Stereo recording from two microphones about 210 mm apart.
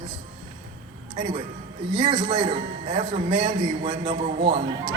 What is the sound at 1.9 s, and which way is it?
A man's voice, 25° right (ahead or behind).